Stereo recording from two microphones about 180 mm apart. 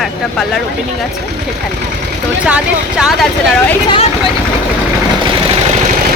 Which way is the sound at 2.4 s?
5° right (ahead or behind).